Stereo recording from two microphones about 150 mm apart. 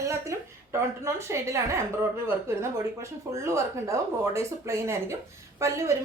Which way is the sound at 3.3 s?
20° right (ahead or behind).